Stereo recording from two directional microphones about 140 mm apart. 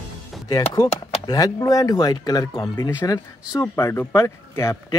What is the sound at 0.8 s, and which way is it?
Speech, 25° left (ahead or behind).